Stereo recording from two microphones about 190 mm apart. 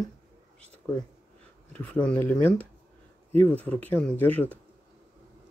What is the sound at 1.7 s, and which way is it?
Speech, 5° left (ahead or behind).